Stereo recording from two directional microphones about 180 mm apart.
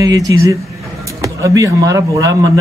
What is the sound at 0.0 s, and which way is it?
A man's voice, 20° right (ahead or behind).